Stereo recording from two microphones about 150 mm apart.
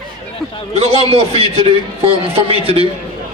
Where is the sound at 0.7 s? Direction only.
45° right (ahead or behind).